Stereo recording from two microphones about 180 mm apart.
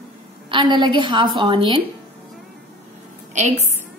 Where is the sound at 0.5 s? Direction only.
25° right (ahead or behind).